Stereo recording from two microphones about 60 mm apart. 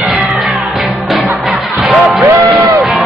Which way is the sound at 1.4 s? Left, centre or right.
Centre.